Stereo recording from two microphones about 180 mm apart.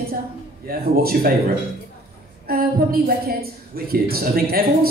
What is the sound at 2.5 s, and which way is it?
A man's voice, 55° right (ahead or behind).